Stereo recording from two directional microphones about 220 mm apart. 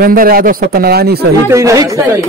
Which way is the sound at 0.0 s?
40° right (ahead or behind).